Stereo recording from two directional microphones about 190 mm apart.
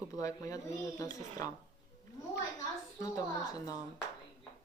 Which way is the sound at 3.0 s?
20° left (ahead or behind).